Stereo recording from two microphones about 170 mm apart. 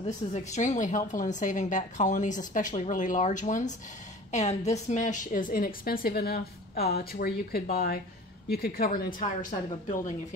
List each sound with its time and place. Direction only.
0.3 s a woman's voice: 45° left (ahead or behind)